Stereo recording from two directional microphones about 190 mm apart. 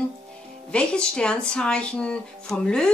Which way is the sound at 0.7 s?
5° left (ahead or behind).